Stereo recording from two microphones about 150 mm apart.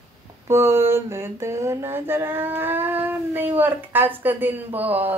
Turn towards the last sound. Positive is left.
turn(degrees=-10)  # may be behind; listen again after turning